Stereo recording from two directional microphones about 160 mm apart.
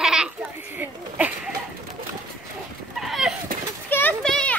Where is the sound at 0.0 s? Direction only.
5° right (ahead or behind).